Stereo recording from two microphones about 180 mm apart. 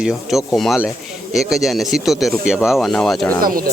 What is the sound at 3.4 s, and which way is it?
Speech, 55° right (ahead or behind).